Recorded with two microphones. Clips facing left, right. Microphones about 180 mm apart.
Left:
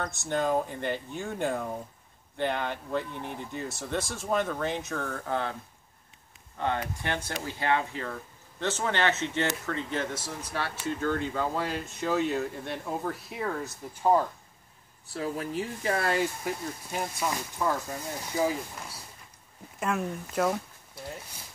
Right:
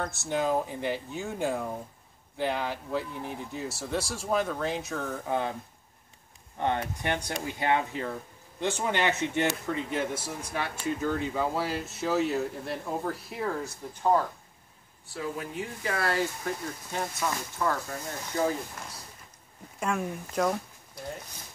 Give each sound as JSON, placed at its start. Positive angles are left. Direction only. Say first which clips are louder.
{"t": 0.3, "sound": "speech", "louder": "even", "side_deg": -5}
{"t": 6.6, "sound": "speech", "louder": "right 1 dB", "side_deg": -20}
{"t": 15.1, "sound": "speech", "louder": "left 3 dB", "side_deg": 40}
{"t": 15.8, "sound": "speech", "louder": "left 1 dB", "side_deg": 25}
{"t": 19.8, "sound": "speech", "louder": "even", "side_deg": 0}